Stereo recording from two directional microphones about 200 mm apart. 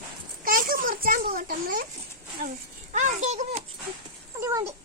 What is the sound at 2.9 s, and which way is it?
Speech, 35° right (ahead or behind).